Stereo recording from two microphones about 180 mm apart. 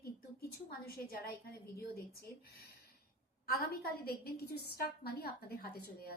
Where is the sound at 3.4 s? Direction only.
55° left (ahead or behind).